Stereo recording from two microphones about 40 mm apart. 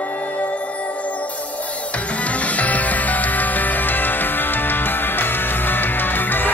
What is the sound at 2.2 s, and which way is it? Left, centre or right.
Music, left.